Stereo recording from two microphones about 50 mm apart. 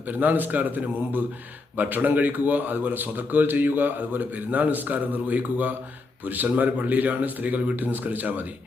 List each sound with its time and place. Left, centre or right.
0.1 s a man's voice: right